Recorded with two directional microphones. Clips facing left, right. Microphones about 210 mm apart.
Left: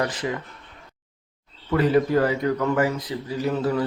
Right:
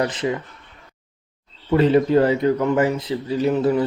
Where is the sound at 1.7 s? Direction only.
25° right (ahead or behind).